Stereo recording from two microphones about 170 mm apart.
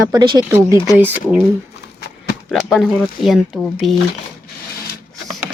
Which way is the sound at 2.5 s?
Centre (ahead or behind).